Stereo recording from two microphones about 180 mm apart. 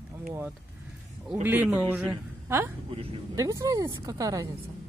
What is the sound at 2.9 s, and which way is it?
Speech, 30° right (ahead or behind).